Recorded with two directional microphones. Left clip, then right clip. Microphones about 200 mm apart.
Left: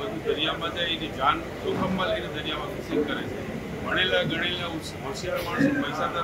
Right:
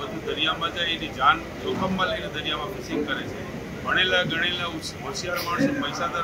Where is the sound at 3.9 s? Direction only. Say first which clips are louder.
Right 3 dB; centre (ahead or behind).